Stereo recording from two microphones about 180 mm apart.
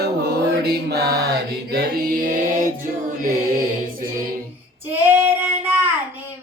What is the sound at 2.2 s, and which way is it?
Music, 50° right (ahead or behind).